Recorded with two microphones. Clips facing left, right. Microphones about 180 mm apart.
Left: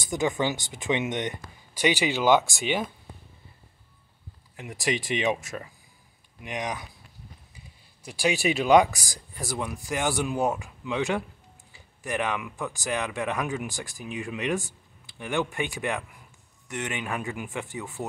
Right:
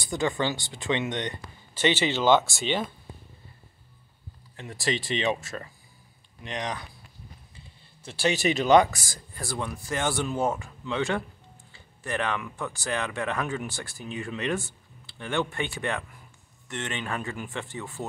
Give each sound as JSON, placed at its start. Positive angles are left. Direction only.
{"t": 0.0, "sound": "speech", "side_deg": 20}
{"t": 4.6, "sound": "speech", "side_deg": 15}